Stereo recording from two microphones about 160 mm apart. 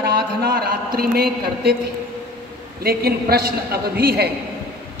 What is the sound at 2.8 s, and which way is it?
A man's voice, 70° right (ahead or behind).